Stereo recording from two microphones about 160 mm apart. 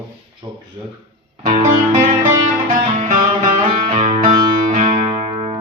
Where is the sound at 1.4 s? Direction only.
50° right (ahead or behind).